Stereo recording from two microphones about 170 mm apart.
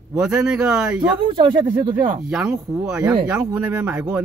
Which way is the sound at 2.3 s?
5° right (ahead or behind).